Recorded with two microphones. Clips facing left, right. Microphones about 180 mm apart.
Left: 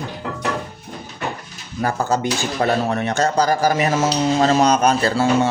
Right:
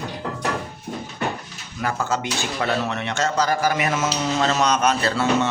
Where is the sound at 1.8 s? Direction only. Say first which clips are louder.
Left 4 dB; 35° left (ahead or behind).